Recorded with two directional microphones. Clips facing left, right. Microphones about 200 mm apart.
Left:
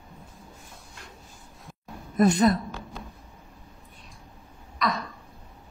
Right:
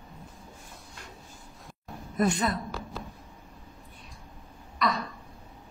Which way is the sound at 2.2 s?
40° left (ahead or behind).